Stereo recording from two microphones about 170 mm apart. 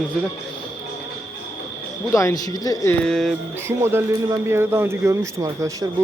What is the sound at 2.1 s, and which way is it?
Speech, 15° left (ahead or behind).